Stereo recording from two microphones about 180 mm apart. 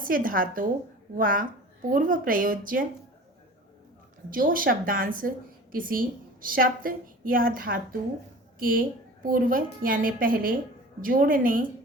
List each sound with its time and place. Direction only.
0.0 s a woman's voice: 50° right (ahead or behind)
4.3 s a woman's voice: 50° right (ahead or behind)